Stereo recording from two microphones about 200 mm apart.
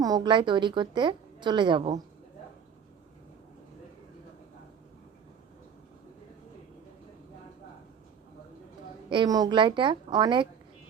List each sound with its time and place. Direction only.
0.0 s a woman's voice: 20° right (ahead or behind)
9.0 s a woman's voice: 20° right (ahead or behind)